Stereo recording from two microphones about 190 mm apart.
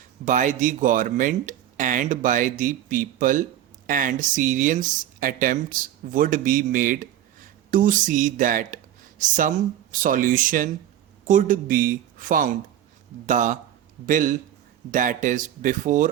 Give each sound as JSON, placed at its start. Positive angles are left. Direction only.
{"t": 0.3, "sound": "speech", "side_deg": -40}